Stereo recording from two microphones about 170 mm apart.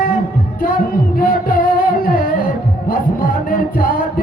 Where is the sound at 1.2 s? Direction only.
55° left (ahead or behind).